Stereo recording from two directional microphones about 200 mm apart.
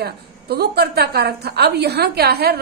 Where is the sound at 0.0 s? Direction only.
55° right (ahead or behind).